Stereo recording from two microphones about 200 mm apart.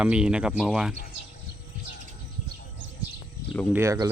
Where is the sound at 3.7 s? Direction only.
15° right (ahead or behind).